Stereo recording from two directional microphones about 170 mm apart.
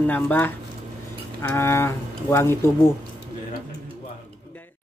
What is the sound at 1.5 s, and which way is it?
Speech, 15° left (ahead or behind).